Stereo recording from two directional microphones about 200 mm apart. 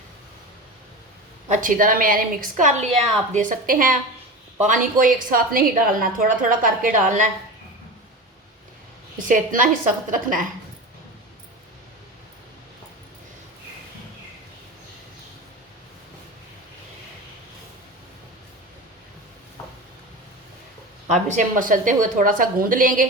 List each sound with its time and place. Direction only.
1.5 s a woman's voice: 40° right (ahead or behind)
9.1 s a woman's voice: 40° right (ahead or behind)
21.1 s a woman's voice: 40° right (ahead or behind)